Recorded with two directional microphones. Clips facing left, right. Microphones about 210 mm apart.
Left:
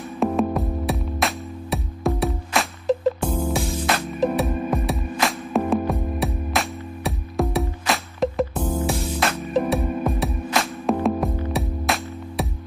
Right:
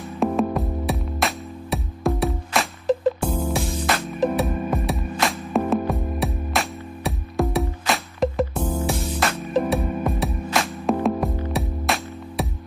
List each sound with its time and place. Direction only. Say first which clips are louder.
0.2 s music: even; centre (ahead or behind)